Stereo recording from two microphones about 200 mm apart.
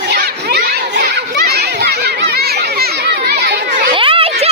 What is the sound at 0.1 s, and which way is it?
Children playing, 55° right (ahead or behind).